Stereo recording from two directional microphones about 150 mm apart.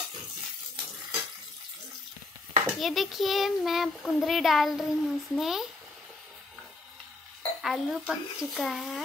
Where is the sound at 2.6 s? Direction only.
Centre (ahead or behind).